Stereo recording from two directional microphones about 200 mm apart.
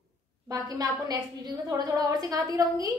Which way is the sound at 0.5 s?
20° right (ahead or behind).